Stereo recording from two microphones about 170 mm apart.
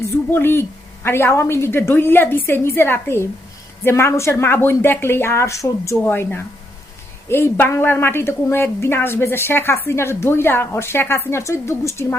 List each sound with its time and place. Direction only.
0.3 s a woman's voice: 10° left (ahead or behind)